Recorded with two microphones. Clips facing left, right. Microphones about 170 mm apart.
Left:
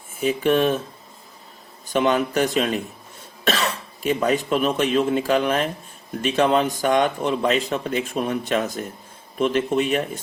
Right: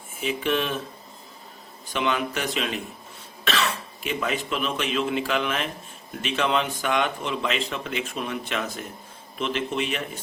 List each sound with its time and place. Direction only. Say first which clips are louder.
0.2 s speech: left 7 dB; 40° left (ahead or behind)
1.9 s speech: left 6 dB; 40° left (ahead or behind)